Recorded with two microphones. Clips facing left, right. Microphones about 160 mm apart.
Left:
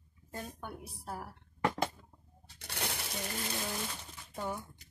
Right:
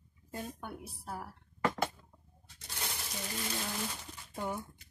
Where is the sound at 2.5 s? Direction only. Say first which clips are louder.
Left 4 dB; 70° left (ahead or behind).